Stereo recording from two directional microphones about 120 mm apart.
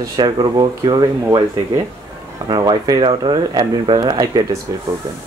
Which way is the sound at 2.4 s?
40° right (ahead or behind).